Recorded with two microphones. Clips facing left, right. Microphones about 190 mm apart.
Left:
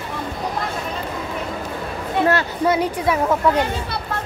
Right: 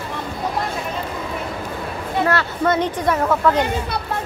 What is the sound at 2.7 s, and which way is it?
Speech, 10° left (ahead or behind).